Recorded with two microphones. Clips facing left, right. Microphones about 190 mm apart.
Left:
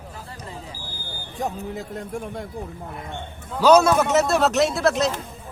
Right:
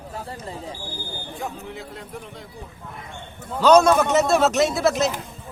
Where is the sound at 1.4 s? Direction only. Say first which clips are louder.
Left 6 dB; 45° left (ahead or behind).